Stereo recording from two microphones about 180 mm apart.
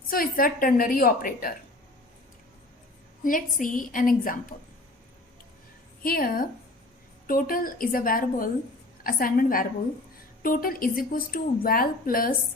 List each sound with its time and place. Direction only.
0.1 s a woman's voice: 50° left (ahead or behind)
3.2 s a woman's voice: 45° left (ahead or behind)
6.0 s a woman's voice: 55° left (ahead or behind)